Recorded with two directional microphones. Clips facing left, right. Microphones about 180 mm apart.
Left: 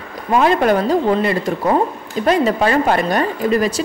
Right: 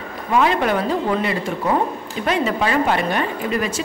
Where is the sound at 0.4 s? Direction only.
45° left (ahead or behind).